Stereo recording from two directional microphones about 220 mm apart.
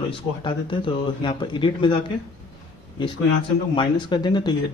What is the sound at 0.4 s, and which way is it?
Speech, 20° left (ahead or behind).